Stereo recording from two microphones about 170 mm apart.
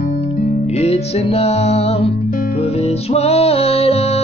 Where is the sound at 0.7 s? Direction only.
40° left (ahead or behind).